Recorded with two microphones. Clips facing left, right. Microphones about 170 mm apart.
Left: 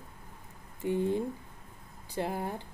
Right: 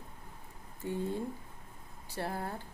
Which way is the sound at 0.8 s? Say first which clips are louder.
Left 6 dB; 15° left (ahead or behind).